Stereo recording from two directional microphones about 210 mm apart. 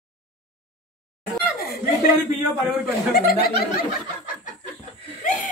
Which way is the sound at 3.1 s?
45° left (ahead or behind).